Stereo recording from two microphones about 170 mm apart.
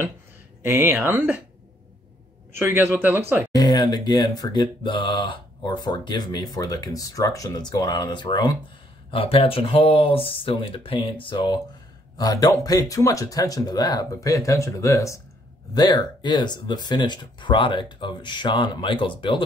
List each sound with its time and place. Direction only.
0.7 s speech: 15° right (ahead or behind)
2.5 s speech: 15° right (ahead or behind)
3.5 s speech: 25° left (ahead or behind)